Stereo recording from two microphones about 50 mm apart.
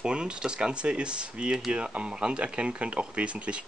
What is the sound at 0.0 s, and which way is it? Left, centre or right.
Speech, centre.